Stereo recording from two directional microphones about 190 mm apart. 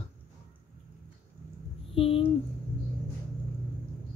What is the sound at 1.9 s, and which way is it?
Speech, 30° left (ahead or behind).